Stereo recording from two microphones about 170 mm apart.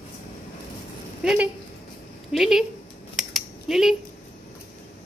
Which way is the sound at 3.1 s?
Centre (ahead or behind).